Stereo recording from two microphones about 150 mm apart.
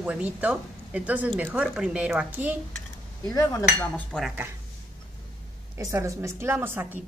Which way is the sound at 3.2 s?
20° left (ahead or behind).